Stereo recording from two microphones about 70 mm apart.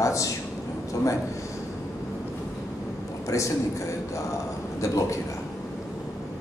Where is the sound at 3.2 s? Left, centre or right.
Left.